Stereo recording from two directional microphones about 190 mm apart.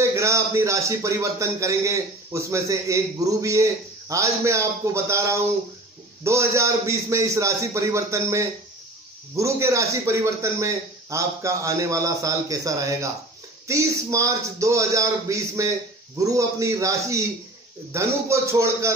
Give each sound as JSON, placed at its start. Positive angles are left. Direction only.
{"t": 0.0, "sound": "a man's voice", "side_deg": -15}